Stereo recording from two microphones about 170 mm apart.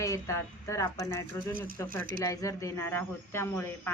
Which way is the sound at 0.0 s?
20° left (ahead or behind).